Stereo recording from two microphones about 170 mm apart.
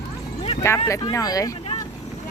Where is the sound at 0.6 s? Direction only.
15° left (ahead or behind).